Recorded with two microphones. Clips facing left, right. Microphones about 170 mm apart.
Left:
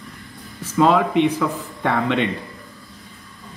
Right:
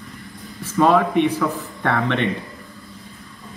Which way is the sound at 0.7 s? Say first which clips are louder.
Even; 10° left (ahead or behind).